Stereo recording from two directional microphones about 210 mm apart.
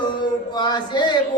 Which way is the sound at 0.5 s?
20° left (ahead or behind).